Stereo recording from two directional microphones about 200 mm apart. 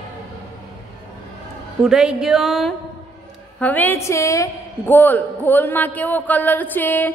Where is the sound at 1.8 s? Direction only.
5° right (ahead or behind).